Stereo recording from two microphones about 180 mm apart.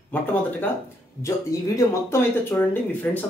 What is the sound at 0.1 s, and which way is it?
Speech, 10° left (ahead or behind).